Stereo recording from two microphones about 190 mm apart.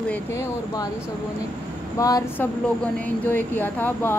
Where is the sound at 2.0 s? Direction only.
20° left (ahead or behind).